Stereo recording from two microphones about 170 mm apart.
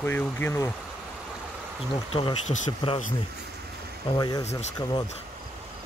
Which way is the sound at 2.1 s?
35° left (ahead or behind).